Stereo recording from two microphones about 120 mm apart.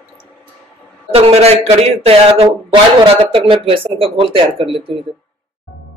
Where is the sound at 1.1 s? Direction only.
60° right (ahead or behind).